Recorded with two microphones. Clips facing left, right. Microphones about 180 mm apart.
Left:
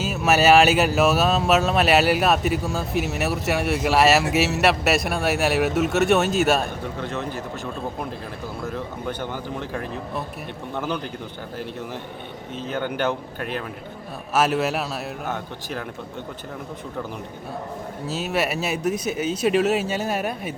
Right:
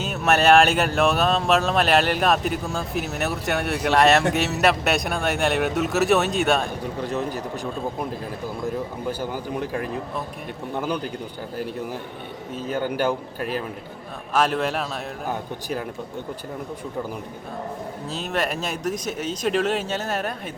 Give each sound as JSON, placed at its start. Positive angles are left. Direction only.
{"t": 0.0, "sound": "speech", "side_deg": 0}
{"t": 7.0, "sound": "speech", "side_deg": -40}
{"t": 9.0, "sound": "a man's voice", "side_deg": -5}
{"t": 10.8, "sound": "a man's voice", "side_deg": -10}
{"t": 12.5, "sound": "a man's voice", "side_deg": -10}
{"t": 14.3, "sound": "speech", "side_deg": 5}
{"t": 18.1, "sound": "speech", "side_deg": 5}